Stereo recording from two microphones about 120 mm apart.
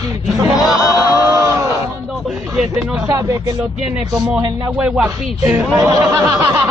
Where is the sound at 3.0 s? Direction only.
30° right (ahead or behind).